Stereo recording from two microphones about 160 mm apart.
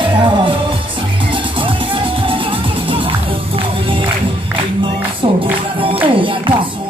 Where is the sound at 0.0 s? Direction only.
30° right (ahead or behind).